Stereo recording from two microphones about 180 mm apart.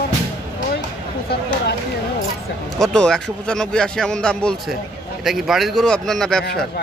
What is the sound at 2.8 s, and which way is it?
A man's voice, 5° left (ahead or behind).